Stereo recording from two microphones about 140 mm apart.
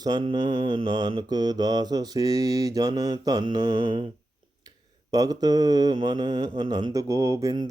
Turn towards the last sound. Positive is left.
turn(degrees=-25)  # may be behind; listen again after turning